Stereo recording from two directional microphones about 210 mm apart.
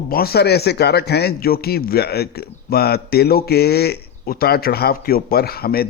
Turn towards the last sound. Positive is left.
turn(degrees=45)  # may be behind; listen again after turning